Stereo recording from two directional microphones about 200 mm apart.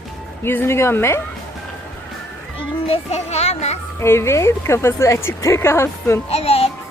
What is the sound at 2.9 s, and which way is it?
Speech, 30° left (ahead or behind).